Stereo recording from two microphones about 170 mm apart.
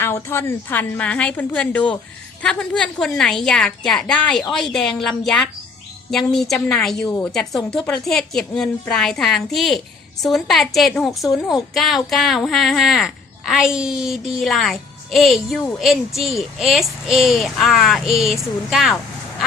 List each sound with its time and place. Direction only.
0.0 s a woman's voice: 15° left (ahead or behind); by 18.9 s centre (ahead or behind)